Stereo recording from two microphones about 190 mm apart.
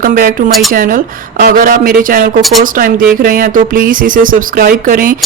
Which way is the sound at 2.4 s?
Centre (ahead or behind).